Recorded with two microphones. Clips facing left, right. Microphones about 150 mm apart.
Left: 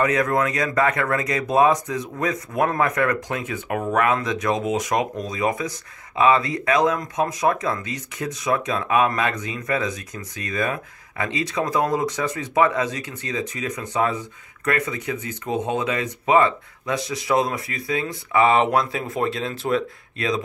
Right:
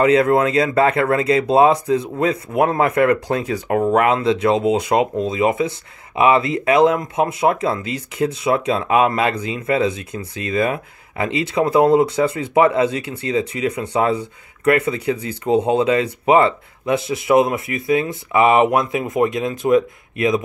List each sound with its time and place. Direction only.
0.0 s speech: 25° right (ahead or behind)